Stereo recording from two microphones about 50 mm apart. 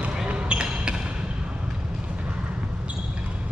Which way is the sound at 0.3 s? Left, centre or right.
Right.